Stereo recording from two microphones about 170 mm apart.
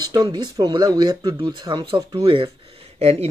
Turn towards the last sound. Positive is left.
turn(degrees=-40)  # may be behind; listen again after turning